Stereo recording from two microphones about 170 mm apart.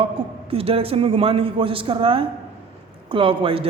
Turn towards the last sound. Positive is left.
turn(degrees=-30)  # may be behind; listen again after turning